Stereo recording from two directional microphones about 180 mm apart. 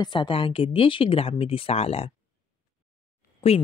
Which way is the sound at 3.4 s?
35° left (ahead or behind).